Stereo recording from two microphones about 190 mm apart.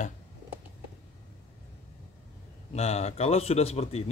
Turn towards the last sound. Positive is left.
turn(degrees=35)  # may be behind; listen again after turning